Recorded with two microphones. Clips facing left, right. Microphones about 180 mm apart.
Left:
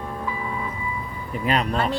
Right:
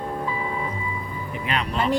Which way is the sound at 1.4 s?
40° left (ahead or behind).